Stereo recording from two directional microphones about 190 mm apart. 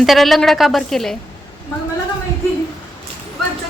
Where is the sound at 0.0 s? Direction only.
Centre (ahead or behind).